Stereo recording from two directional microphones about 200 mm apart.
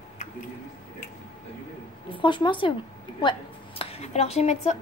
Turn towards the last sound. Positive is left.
turn(degrees=35)  # may be behind; listen again after turning